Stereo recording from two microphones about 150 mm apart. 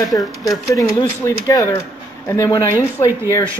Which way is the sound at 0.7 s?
20° left (ahead or behind).